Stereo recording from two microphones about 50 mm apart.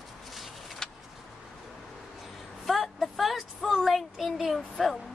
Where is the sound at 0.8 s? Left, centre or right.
Centre.